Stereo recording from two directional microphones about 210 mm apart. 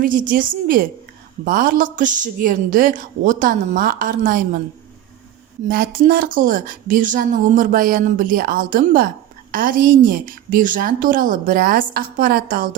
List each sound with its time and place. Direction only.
0.0 s speech: 40° right (ahead or behind)
5.6 s speech: 45° right (ahead or behind)